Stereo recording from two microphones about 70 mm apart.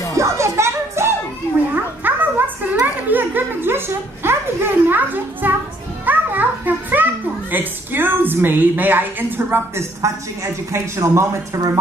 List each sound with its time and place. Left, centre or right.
0.2 s music: right
1.7 s music: right
3.1 s a sound: right
6.0 s music: right
7.5 s a woman's voice: right
10.0 s speech: right
11.5 s speech: right